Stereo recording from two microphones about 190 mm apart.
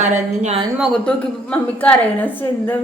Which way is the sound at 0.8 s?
5° left (ahead or behind).